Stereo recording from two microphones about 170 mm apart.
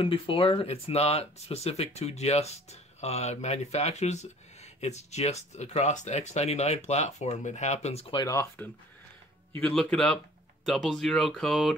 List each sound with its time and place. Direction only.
0.0 s speech: 30° left (ahead or behind)
8.2 s speech: 15° left (ahead or behind)
9.6 s speech: 5° left (ahead or behind)